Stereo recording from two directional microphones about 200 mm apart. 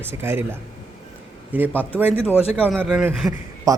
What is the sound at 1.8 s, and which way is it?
A man's voice, 10° right (ahead or behind).